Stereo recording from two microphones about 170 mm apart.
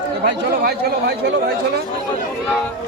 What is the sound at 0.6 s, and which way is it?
Speech, 70° right (ahead or behind).